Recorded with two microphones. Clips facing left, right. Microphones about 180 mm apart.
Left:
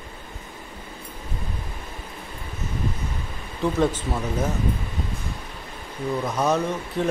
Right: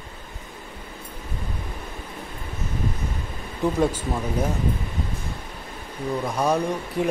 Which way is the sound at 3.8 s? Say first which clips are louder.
Even; 10° right (ahead or behind).